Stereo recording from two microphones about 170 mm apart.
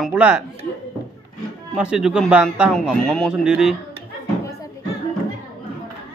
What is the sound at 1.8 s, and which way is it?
A man's voice, 5° right (ahead or behind).